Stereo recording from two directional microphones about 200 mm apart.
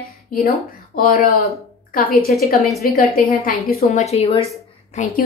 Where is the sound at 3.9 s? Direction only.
30° left (ahead or behind).